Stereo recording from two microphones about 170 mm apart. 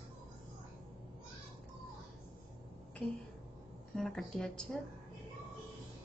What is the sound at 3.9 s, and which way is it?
Speech, 5° left (ahead or behind).